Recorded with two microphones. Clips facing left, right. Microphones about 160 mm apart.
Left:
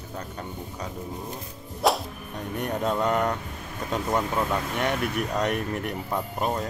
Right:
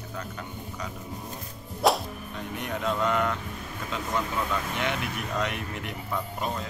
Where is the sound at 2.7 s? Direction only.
40° left (ahead or behind).